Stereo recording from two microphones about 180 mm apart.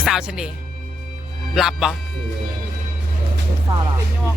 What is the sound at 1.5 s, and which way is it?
Speech, centre (ahead or behind).